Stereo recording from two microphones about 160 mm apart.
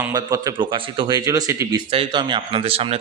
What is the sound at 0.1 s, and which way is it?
A man's voice, 25° right (ahead or behind).